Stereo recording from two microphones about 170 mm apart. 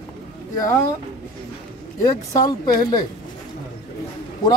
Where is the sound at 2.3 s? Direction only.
20° left (ahead or behind).